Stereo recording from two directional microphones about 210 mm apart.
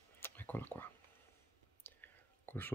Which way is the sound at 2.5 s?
10° left (ahead or behind).